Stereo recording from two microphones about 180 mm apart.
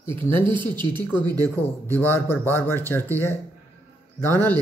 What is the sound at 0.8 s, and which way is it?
Speech, 25° right (ahead or behind).